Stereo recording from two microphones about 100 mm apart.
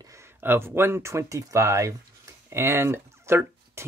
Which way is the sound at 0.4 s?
25° right (ahead or behind).